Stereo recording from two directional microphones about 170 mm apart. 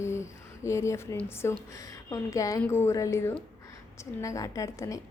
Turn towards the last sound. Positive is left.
turn(degrees=20)  # may be behind; listen again after turning